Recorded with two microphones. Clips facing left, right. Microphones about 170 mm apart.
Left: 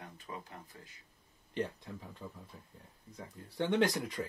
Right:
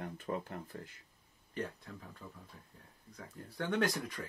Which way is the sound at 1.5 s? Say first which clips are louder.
Left 4 dB; 20° left (ahead or behind).